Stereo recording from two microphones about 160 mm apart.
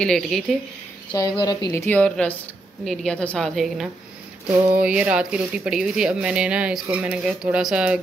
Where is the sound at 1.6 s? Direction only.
15° left (ahead or behind).